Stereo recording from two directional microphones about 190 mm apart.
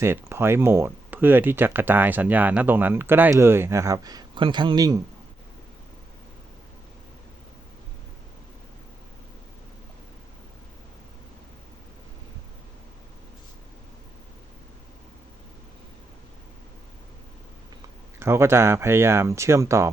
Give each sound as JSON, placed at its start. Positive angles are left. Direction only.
{"t": 0.0, "sound": "speech", "side_deg": -15}
{"t": 18.2, "sound": "speech", "side_deg": -15}